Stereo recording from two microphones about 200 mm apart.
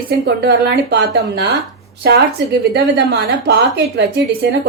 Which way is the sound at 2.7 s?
55° right (ahead or behind).